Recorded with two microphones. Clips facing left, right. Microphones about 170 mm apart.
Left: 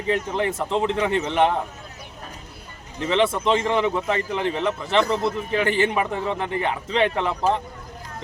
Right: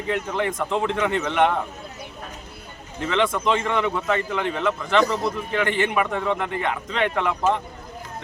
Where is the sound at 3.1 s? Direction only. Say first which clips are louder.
Left 2 dB; 30° left (ahead or behind).